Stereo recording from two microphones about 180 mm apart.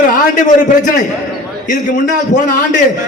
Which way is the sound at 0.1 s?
45° left (ahead or behind).